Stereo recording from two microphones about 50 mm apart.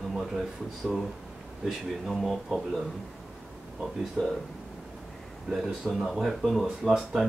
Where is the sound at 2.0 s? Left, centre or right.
Centre.